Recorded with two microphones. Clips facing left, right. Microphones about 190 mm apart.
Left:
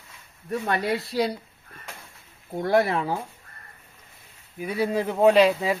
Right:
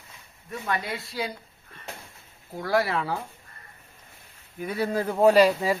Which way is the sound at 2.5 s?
20° left (ahead or behind).